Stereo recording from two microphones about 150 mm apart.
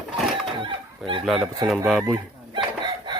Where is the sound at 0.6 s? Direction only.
35° right (ahead or behind).